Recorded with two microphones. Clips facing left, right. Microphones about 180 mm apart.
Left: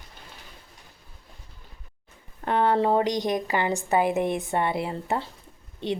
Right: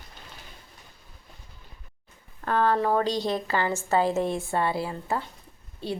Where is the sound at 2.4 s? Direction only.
20° left (ahead or behind).